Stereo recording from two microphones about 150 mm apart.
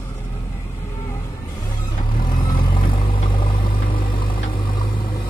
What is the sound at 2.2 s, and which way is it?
Vehicle, 35° left (ahead or behind).